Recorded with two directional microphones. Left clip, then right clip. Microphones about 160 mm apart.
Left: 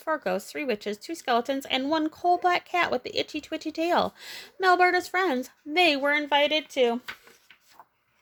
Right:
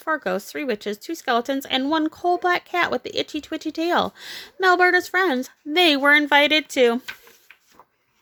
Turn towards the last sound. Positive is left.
turn(degrees=15)  # may be behind; listen again after turning